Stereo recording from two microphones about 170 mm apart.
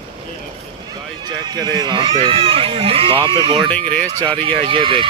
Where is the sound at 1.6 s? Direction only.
25° right (ahead or behind).